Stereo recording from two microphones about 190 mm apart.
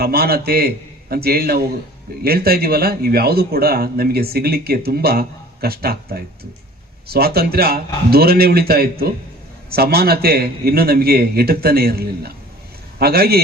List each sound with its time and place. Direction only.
0.0 s a man's voice: 55° right (ahead or behind)